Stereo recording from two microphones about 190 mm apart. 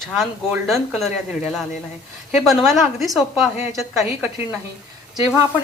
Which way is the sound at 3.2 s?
15° right (ahead or behind).